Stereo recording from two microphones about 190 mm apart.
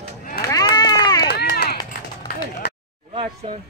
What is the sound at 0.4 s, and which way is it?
Run, 20° left (ahead or behind).